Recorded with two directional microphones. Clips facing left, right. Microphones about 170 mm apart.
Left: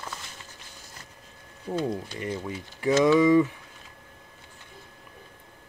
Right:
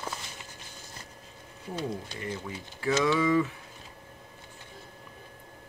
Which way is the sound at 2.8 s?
20° left (ahead or behind).